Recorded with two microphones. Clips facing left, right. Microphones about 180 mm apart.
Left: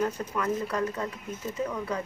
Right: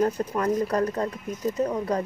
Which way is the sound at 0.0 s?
35° right (ahead or behind).